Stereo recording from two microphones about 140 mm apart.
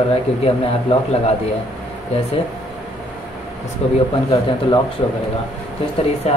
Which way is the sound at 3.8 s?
50° left (ahead or behind).